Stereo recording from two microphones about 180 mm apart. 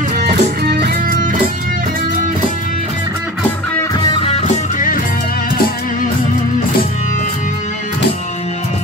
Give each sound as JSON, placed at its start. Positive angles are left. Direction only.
{"t": 0.2, "sound": "music", "side_deg": -60}
{"t": 4.0, "sound": "music", "side_deg": 30}